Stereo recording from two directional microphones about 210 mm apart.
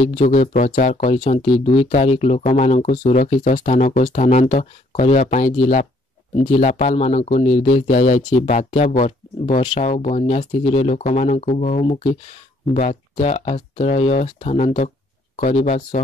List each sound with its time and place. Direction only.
0.0 s speech: 35° left (ahead or behind)